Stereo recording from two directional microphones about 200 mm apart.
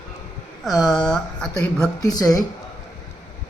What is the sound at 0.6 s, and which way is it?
Speech, centre (ahead or behind).